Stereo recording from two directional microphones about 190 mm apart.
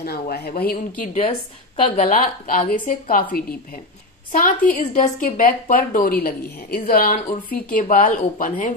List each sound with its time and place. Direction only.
0.0 s a woman's voice: 55° left (ahead or behind)
4.3 s a woman's voice: 40° left (ahead or behind)